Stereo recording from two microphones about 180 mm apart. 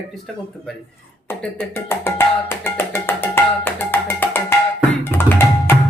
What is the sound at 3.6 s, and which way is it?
Music, 10° left (ahead or behind).